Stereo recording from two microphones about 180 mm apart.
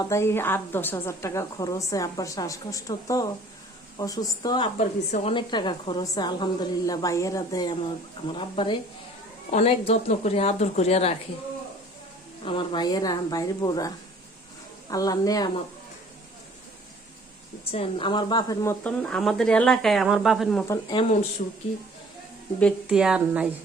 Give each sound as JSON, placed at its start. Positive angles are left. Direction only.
{"t": 0.0, "sound": "a woman's voice", "side_deg": 15}
{"t": 4.8, "sound": "speech", "side_deg": 40}
{"t": 5.3, "sound": "a woman's voice", "side_deg": 25}
{"t": 12.5, "sound": "a woman's voice", "side_deg": 25}
{"t": 17.7, "sound": "speech", "side_deg": 30}
{"t": 20.9, "sound": "speech", "side_deg": 30}
{"t": 21.4, "sound": "speech", "side_deg": 50}
{"t": 22.9, "sound": "speech", "side_deg": -5}